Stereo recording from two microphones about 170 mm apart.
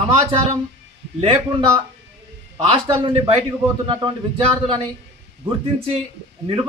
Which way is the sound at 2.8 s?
20° right (ahead or behind).